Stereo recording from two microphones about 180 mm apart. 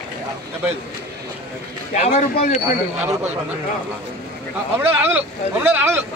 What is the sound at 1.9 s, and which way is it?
Speech, 45° left (ahead or behind).